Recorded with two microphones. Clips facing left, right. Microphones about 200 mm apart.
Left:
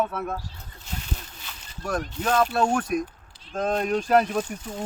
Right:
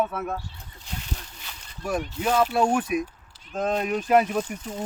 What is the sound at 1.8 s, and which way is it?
Speech, 5° right (ahead or behind).